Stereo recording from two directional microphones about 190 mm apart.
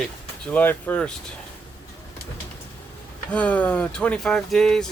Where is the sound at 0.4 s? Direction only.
10° left (ahead or behind).